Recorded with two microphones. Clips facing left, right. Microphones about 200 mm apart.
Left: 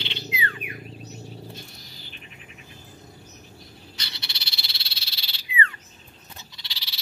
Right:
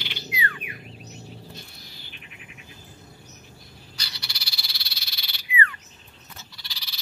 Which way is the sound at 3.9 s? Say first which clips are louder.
Left 1 dB; 25° left (ahead or behind).